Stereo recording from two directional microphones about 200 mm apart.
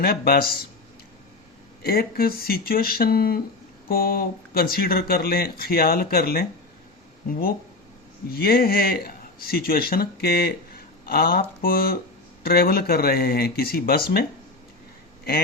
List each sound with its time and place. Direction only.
0.0 s speech: 50° left (ahead or behind)
1.8 s speech: 50° left (ahead or behind)